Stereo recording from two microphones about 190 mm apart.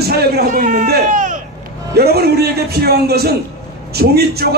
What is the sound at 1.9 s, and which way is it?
A man's voice, 55° right (ahead or behind).